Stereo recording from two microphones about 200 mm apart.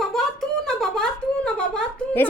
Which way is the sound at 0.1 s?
Centre (ahead or behind).